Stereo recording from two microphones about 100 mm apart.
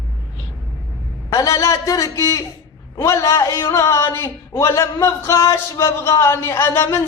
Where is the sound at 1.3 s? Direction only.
35° left (ahead or behind).